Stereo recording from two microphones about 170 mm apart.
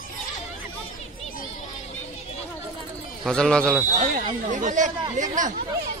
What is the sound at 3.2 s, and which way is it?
Speech, 5° left (ahead or behind).